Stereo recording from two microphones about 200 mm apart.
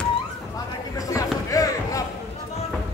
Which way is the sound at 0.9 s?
15° left (ahead or behind).